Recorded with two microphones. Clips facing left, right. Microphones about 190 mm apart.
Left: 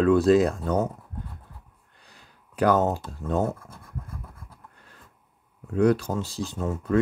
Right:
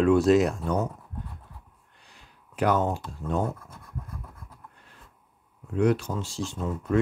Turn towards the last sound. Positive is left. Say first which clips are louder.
# left 2 dB
turn(degrees=40)  # may be behind; listen again after turning